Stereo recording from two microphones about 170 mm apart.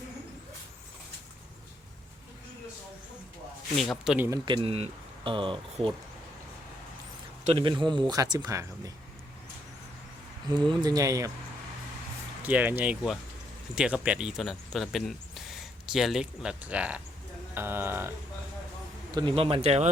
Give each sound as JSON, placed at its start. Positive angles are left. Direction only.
{"t": 3.8, "sound": "speech", "side_deg": 0}
{"t": 4.3, "sound": "speech", "side_deg": -30}
{"t": 7.4, "sound": "speech", "side_deg": -30}
{"t": 10.5, "sound": "speech", "side_deg": -25}
{"t": 12.4, "sound": "speech", "side_deg": -10}
{"t": 19.1, "sound": "speech", "side_deg": -30}